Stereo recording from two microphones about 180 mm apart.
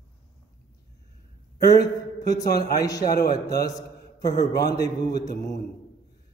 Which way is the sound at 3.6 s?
20° left (ahead or behind).